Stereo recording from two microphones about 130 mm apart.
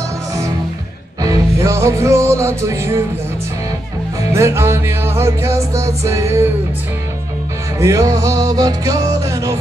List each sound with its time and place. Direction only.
1.2 s music: 25° right (ahead or behind)
4.3 s music: 20° right (ahead or behind)
7.8 s music: 25° right (ahead or behind)